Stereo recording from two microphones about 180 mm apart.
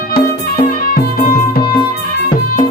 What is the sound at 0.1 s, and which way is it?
Music, 55° left (ahead or behind).